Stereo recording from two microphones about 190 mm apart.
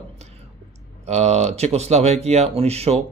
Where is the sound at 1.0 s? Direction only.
35° right (ahead or behind).